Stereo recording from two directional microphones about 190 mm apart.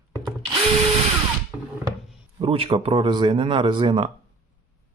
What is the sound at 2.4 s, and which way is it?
Speech, 30° right (ahead or behind).